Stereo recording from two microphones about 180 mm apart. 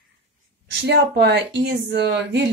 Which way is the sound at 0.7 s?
70° right (ahead or behind).